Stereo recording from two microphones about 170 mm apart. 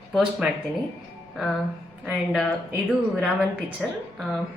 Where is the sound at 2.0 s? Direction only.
5° right (ahead or behind).